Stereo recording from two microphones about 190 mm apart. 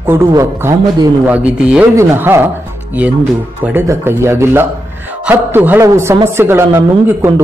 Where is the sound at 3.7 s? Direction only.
15° right (ahead or behind).